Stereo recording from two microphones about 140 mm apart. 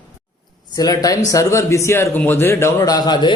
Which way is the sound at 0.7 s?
25° left (ahead or behind).